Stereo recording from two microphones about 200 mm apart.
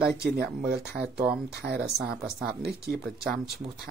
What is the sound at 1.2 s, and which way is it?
Speech, 5° right (ahead or behind).